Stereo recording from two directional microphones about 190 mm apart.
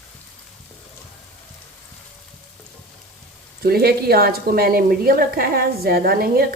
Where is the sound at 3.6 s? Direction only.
55° right (ahead or behind).